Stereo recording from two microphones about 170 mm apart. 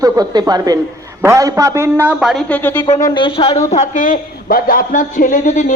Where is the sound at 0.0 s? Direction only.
20° right (ahead or behind); by 2.4 s 5° right (ahead or behind).